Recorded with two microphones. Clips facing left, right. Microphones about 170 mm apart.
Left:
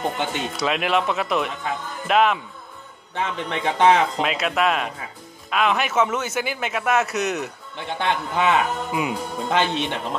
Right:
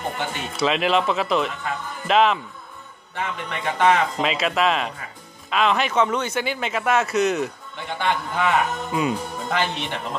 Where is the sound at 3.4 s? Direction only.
20° left (ahead or behind).